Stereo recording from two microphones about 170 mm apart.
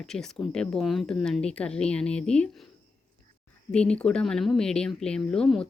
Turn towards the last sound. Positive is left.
turn(degrees=5)  # may be behind; listen again after turning